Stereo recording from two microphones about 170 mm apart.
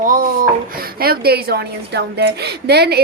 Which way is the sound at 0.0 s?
55° right (ahead or behind).